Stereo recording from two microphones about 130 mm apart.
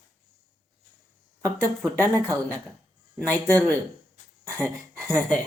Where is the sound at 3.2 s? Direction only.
20° right (ahead or behind).